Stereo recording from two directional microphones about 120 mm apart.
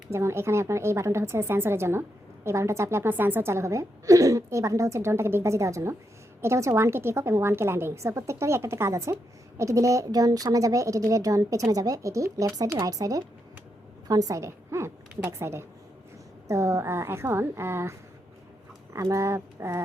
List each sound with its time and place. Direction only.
0.1 s a woman's voice: 25° right (ahead or behind)
18.9 s a woman's voice: 25° right (ahead or behind)